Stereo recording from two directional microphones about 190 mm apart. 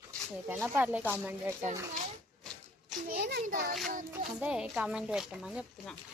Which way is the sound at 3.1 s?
60° right (ahead or behind).